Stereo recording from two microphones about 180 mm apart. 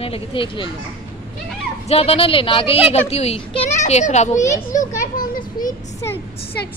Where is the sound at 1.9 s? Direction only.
35° left (ahead or behind); by 5.8 s 50° left (ahead or behind).